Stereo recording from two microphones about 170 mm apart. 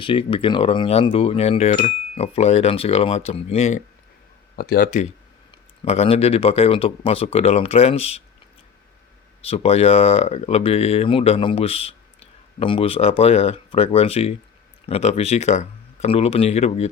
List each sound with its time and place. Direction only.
0.0 s speech: 30° left (ahead or behind)
4.5 s speech: 65° left (ahead or behind)
5.8 s speech: 35° left (ahead or behind)
9.4 s speech: 35° left (ahead or behind)